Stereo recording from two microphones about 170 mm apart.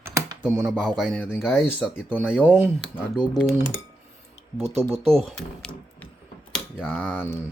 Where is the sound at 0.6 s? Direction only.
Centre (ahead or behind).